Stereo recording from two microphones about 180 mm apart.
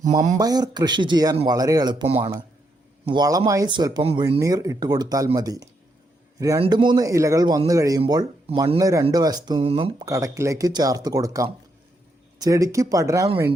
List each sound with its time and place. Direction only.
0.1 s speech: 20° right (ahead or behind)
3.1 s speech: 20° right (ahead or behind)